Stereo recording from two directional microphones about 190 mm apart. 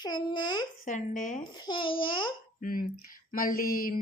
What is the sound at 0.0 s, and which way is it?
Speech, 20° left (ahead or behind).